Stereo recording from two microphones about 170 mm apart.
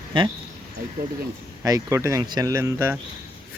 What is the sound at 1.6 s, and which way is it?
Speech, 20° right (ahead or behind).